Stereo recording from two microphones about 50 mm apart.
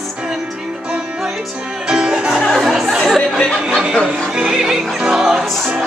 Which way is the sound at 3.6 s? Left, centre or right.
Centre.